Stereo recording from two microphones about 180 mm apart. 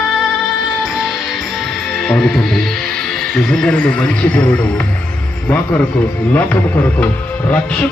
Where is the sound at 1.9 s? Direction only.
5° left (ahead or behind).